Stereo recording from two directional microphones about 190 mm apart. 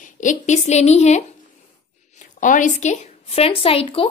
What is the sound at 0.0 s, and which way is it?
A woman's voice, 40° left (ahead or behind).